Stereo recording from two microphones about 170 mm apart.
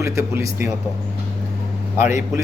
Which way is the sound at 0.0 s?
15° right (ahead or behind).